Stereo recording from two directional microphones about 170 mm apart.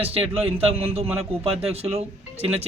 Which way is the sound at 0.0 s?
35° right (ahead or behind).